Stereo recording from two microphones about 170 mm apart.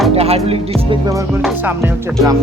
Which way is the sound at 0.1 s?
35° right (ahead or behind).